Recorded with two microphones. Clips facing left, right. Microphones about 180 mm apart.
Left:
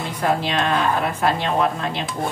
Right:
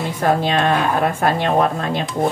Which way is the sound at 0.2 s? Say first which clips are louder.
Right 4 dB; 50° right (ahead or behind).